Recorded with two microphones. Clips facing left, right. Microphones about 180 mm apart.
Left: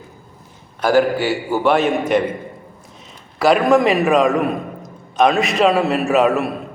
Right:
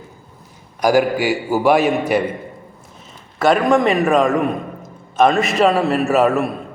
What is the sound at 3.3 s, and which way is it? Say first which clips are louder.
A man's voice: left 1 dB; centre (ahead or behind).